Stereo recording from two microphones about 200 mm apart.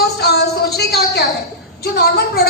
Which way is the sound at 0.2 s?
50° left (ahead or behind).